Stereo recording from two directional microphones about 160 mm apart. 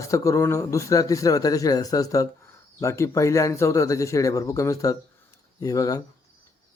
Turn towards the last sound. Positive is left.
turn(degrees=20)  # may be behind; listen again after turning